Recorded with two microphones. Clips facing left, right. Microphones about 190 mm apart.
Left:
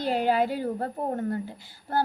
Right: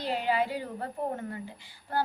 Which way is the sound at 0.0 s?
45° left (ahead or behind).